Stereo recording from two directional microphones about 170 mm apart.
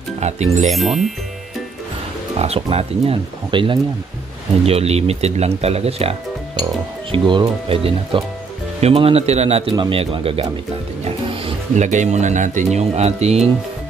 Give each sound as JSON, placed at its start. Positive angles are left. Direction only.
{"t": 0.2, "sound": "speech", "side_deg": -40}
{"t": 0.7, "sound": "speech", "side_deg": 0}
{"t": 2.3, "sound": "speech", "side_deg": -40}